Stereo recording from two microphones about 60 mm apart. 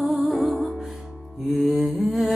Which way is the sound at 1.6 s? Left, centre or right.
Centre.